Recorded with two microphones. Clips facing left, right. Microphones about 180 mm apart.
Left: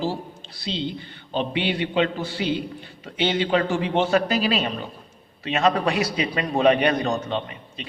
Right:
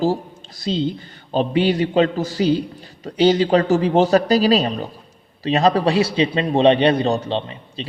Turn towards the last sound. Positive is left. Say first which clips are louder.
# right 4 dB
turn(degrees=-30)  # may be behind; listen again after turning